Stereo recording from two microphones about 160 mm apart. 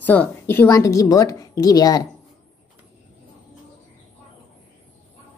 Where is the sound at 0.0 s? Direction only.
10° left (ahead or behind).